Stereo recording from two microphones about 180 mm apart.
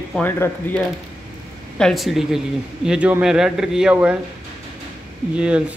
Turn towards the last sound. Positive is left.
turn(degrees=-5)  # may be behind; listen again after turning